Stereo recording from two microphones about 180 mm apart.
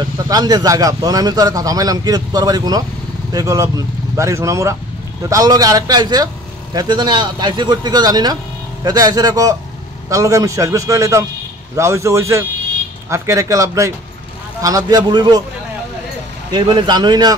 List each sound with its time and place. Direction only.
0.0 s speech: 20° right (ahead or behind)
16.5 s speech: 25° right (ahead or behind)